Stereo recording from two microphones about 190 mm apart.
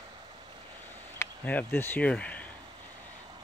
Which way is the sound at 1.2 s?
10° left (ahead or behind).